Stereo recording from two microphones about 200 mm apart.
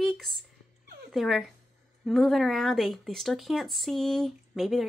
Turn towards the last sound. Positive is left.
turn(degrees=0)  # may be behind; listen again after turning